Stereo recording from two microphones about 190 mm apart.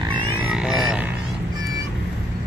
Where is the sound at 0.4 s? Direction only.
5° right (ahead or behind).